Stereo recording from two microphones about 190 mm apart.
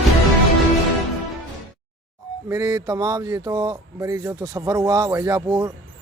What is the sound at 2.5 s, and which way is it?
Speech, 20° right (ahead or behind).